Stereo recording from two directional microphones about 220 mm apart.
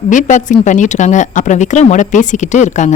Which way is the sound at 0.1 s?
35° left (ahead or behind).